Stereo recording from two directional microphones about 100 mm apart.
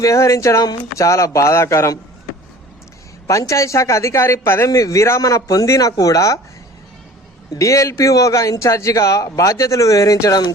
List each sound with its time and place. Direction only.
0.0 s speech: 30° left (ahead or behind)
3.2 s speech: 30° left (ahead or behind)
7.5 s speech: 35° left (ahead or behind)